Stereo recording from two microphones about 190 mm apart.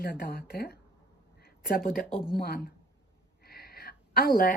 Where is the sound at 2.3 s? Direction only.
55° left (ahead or behind).